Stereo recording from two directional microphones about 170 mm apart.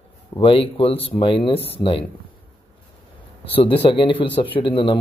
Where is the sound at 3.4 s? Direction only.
35° left (ahead or behind).